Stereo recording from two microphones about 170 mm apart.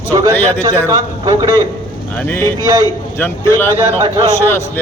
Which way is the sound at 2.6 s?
20° right (ahead or behind).